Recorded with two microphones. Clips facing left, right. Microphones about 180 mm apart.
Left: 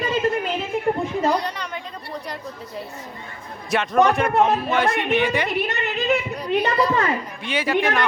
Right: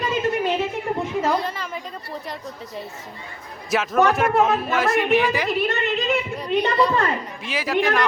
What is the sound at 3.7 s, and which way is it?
Speech, centre (ahead or behind).